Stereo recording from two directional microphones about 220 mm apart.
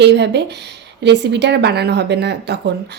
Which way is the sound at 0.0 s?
50° right (ahead or behind).